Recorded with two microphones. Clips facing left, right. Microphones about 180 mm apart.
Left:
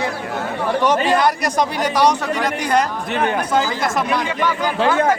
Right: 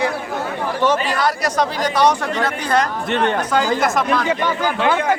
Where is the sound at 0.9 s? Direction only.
20° left (ahead or behind).